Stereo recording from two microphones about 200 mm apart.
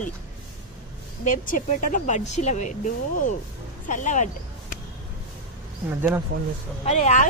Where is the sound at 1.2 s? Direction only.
40° left (ahead or behind).